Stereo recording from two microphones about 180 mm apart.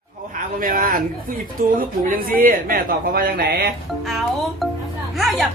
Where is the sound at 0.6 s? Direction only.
50° right (ahead or behind).